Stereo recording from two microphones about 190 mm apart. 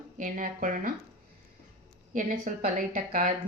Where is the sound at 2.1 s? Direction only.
45° right (ahead or behind).